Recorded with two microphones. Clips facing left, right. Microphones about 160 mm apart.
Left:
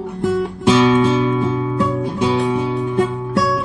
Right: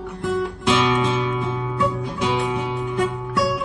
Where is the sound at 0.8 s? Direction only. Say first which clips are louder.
Left 8 dB; 30° left (ahead or behind).